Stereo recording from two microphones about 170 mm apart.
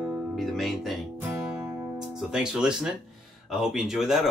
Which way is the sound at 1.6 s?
15° right (ahead or behind).